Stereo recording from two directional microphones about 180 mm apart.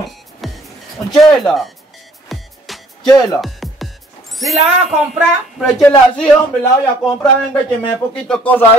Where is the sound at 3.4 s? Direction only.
Centre (ahead or behind).